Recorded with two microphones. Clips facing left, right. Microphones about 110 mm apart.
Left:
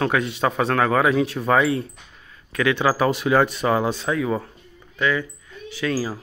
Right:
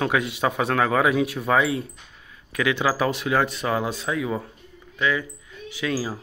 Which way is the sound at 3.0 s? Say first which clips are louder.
Left 4 dB; centre (ahead or behind).